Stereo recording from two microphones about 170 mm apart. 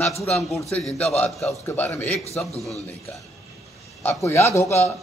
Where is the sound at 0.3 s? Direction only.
Centre (ahead or behind).